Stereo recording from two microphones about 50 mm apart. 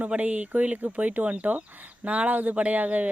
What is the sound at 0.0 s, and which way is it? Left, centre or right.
Speech, right.